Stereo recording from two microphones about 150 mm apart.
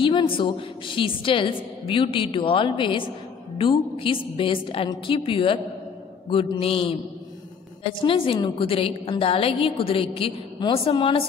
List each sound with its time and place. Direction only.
0.0 s a woman's voice: 30° left (ahead or behind)
8.0 s a woman's voice: 35° left (ahead or behind)